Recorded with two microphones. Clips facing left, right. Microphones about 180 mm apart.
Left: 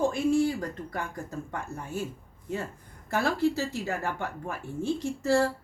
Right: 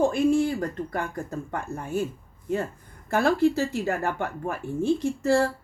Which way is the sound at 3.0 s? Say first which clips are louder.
Right 5 dB; 55° right (ahead or behind).